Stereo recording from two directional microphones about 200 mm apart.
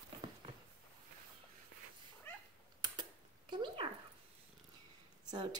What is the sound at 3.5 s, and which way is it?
Dog, 25° right (ahead or behind).